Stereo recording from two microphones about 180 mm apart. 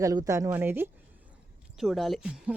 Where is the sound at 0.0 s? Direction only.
20° right (ahead or behind).